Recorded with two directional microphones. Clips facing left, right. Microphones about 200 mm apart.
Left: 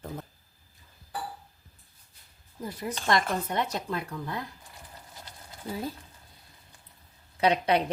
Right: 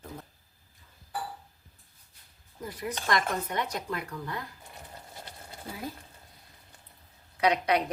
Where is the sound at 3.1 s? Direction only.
25° left (ahead or behind).